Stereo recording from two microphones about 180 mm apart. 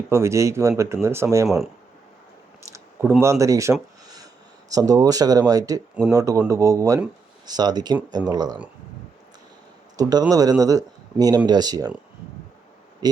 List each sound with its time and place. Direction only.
0.1 s speech: 15° right (ahead or behind)
1.5 s speech: centre (ahead or behind)
2.6 s a sound: 10° right (ahead or behind)
4.7 s speech: 20° right (ahead or behind)
10.0 s speech: 20° right (ahead or behind)